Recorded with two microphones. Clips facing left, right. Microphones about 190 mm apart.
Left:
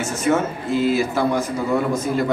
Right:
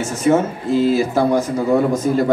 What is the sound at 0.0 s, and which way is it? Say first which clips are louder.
A man's voice: right 4 dB; 35° right (ahead or behind).